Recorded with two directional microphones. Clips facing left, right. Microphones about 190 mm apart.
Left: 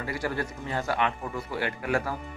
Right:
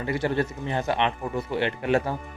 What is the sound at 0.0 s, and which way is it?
Speech, 25° right (ahead or behind).